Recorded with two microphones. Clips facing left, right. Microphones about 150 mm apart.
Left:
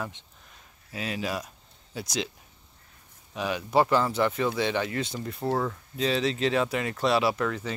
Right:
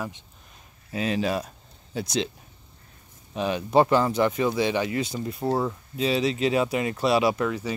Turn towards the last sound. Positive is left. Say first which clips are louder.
# right 3 dB
turn(degrees=-15)  # may be behind; listen again after turning